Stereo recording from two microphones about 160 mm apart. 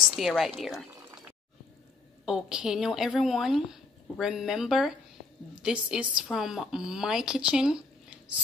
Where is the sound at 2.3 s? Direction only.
5° right (ahead or behind).